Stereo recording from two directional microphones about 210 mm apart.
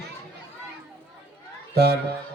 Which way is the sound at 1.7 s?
50° right (ahead or behind).